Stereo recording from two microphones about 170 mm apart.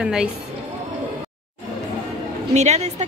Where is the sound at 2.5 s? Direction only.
40° right (ahead or behind).